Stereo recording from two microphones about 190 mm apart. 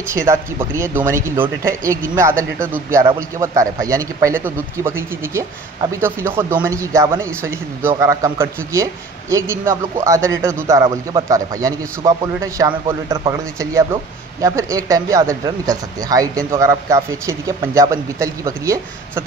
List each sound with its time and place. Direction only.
0.1 s speech: 15° right (ahead or behind)